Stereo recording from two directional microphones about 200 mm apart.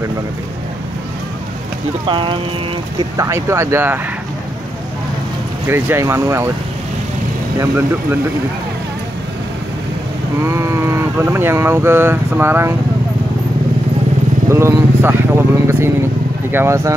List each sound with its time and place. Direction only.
2.0 s speech: 25° right (ahead or behind)
3.0 s speech: 15° right (ahead or behind)
5.7 s speech: 10° right (ahead or behind)
7.5 s speech: 10° right (ahead or behind)
10.4 s speech: 15° right (ahead or behind)
14.5 s speech: 15° right (ahead or behind)